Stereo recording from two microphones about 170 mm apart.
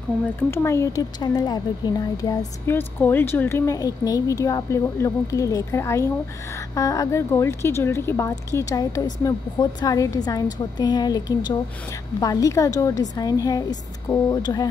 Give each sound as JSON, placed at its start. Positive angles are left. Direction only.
{"t": 0.4, "sound": "a woman's voice", "side_deg": 15}